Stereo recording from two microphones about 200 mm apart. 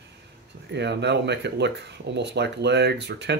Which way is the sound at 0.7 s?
60° right (ahead or behind).